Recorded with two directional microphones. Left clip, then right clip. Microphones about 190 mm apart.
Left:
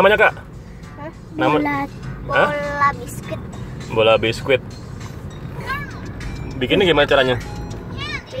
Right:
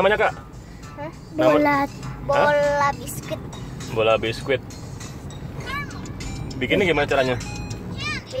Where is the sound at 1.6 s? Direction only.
30° right (ahead or behind).